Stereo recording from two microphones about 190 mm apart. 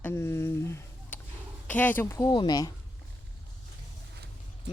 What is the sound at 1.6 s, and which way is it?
Speech, 10° left (ahead or behind).